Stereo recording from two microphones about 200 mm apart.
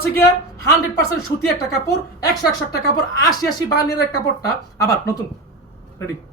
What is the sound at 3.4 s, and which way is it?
A woman's voice, 20° left (ahead or behind).